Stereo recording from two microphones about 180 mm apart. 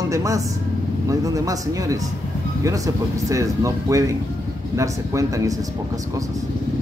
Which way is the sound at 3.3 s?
15° right (ahead or behind).